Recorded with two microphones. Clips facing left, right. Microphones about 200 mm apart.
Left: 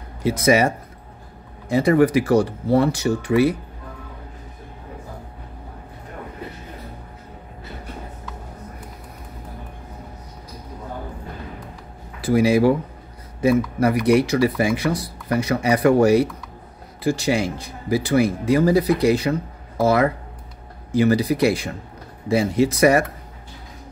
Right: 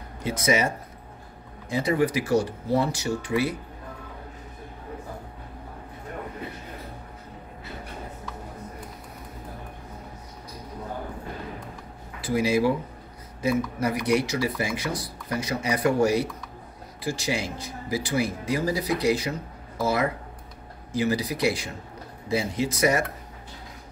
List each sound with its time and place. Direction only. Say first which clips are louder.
0.4 s speech: left 6 dB; 60° left (ahead or behind)
12.4 s speech: left 6 dB; 60° left (ahead or behind)